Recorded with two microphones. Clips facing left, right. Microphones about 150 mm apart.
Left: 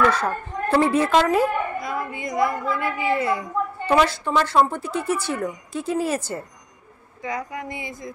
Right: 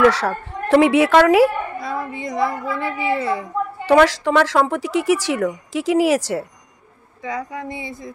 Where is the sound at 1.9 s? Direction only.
30° right (ahead or behind).